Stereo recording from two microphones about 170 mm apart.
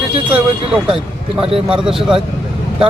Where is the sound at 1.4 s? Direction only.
35° right (ahead or behind).